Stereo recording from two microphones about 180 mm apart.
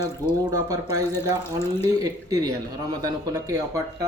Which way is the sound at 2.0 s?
20° right (ahead or behind).